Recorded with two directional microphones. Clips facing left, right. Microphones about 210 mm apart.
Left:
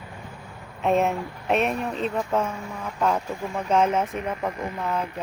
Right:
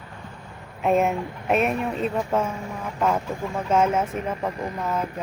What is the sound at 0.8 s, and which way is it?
Speech, 5° right (ahead or behind).